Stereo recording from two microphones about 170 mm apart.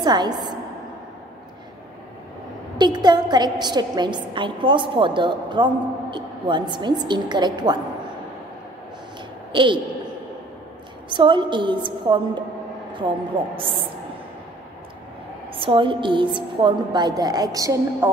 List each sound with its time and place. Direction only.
0.0 s a woman's voice: 25° right (ahead or behind)
2.8 s a woman's voice: 25° right (ahead or behind)
9.5 s a woman's voice: 30° right (ahead or behind)
11.1 s a woman's voice: 30° right (ahead or behind)
13.6 s a woman's voice: 30° right (ahead or behind)
15.5 s a woman's voice: 30° right (ahead or behind)